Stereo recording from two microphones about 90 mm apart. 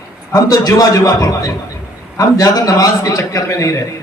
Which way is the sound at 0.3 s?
40° left (ahead or behind).